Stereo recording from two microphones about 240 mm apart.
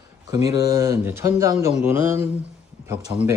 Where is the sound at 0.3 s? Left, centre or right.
Centre.